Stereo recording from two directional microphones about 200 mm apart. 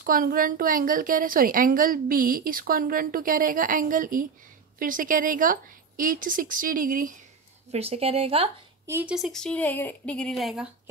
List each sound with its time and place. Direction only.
0.0 s a woman's voice: 45° right (ahead or behind)
7.7 s a woman's voice: 30° right (ahead or behind)
8.8 s speech: 10° right (ahead or behind)